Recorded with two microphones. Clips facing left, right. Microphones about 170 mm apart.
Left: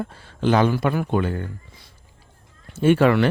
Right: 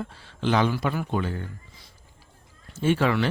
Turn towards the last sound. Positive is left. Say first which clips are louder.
# left 6 dB
turn(degrees=60)  # may be behind; listen again after turning